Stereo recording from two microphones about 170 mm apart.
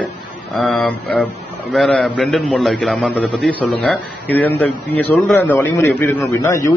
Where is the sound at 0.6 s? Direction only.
5° left (ahead or behind).